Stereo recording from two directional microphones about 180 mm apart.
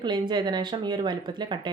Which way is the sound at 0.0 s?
25° right (ahead or behind).